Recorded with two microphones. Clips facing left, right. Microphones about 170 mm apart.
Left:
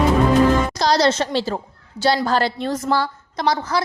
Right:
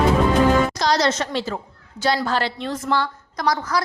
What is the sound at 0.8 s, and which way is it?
A woman's voice, 35° left (ahead or behind).